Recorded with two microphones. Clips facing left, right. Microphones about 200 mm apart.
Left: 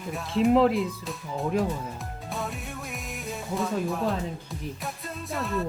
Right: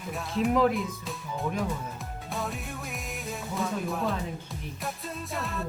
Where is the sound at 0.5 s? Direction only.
25° left (ahead or behind).